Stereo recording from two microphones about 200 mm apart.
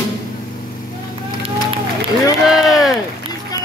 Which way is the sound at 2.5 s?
Centre (ahead or behind).